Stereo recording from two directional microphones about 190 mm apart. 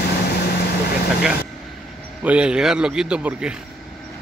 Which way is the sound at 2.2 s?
5° right (ahead or behind).